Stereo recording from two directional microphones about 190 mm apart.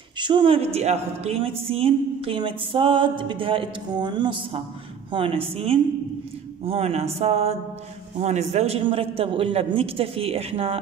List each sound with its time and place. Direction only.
0.2 s a man's voice: 25° right (ahead or behind)
1.7 s music: 30° right (ahead or behind)
5.1 s a man's voice: 30° right (ahead or behind)